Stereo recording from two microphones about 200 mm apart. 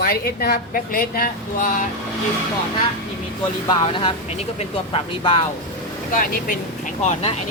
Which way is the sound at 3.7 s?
25° left (ahead or behind).